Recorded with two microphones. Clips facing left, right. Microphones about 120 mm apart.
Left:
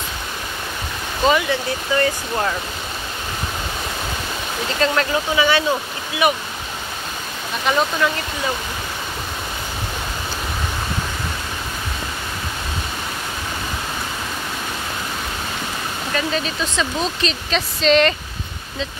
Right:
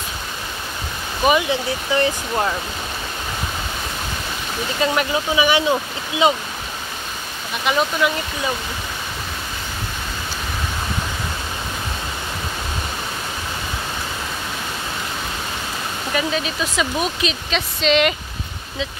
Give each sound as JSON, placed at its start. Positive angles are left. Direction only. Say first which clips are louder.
{"t": 1.2, "sound": "speech", "louder": "even", "side_deg": -20}
{"t": 4.7, "sound": "speech", "louder": "left 1 dB", "side_deg": -15}
{"t": 7.7, "sound": "speech", "louder": "even", "side_deg": -5}
{"t": 16.1, "sound": "speech", "louder": "right 1 dB", "side_deg": -5}